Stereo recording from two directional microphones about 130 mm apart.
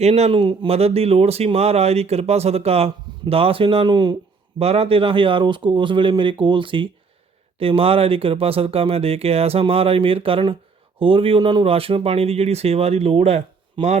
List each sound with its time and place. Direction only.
0.0 s speech: 55° right (ahead or behind); by 4.1 s 35° right (ahead or behind)
4.6 s a man's voice: 50° right (ahead or behind)